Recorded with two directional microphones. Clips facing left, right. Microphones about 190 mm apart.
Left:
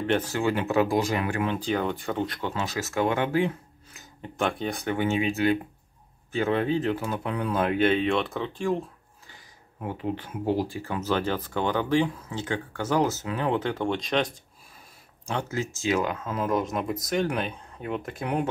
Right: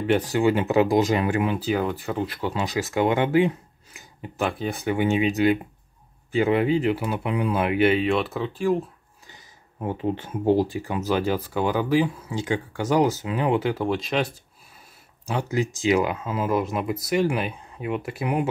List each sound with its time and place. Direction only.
0.0 s speech: 10° right (ahead or behind)
1.5 s speech: 5° right (ahead or behind)
4.4 s speech: 5° right (ahead or behind)
4.9 s speech: 15° right (ahead or behind)
9.8 s speech: 25° right (ahead or behind); by 18.5 s 10° right (ahead or behind)